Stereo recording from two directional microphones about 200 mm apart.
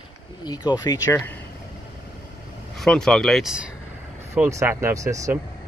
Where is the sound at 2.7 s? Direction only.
5° left (ahead or behind); by 5.3 s 15° right (ahead or behind).